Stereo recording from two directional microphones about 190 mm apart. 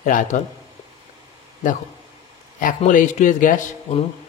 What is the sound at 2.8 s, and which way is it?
Speech, 40° left (ahead or behind).